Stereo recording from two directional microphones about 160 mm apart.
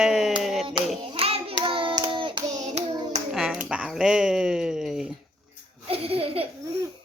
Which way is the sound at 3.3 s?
5° right (ahead or behind).